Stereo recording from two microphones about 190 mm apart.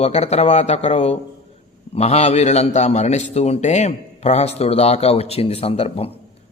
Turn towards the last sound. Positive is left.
turn(degrees=30)  # may be behind; listen again after turning